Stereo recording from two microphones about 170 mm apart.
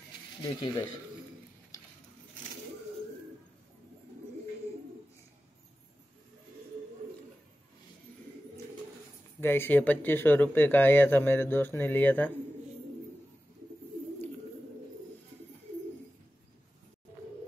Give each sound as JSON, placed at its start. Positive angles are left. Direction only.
{"t": 0.4, "sound": "speech", "side_deg": 25}
{"t": 9.4, "sound": "speech", "side_deg": 15}